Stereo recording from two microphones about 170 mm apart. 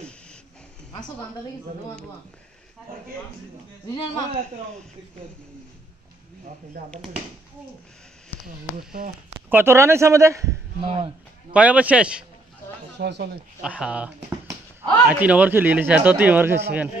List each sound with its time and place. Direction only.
6.8 s speech: 50° right (ahead or behind)
8.5 s speech: 55° right (ahead or behind)
9.5 s speech: 15° right (ahead or behind)
10.8 s speech: 35° right (ahead or behind)
11.5 s speech: 10° right (ahead or behind)
12.9 s speech: 85° right
13.6 s speech: 5° right (ahead or behind)